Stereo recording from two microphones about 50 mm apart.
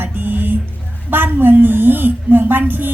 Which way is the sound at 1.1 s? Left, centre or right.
Right.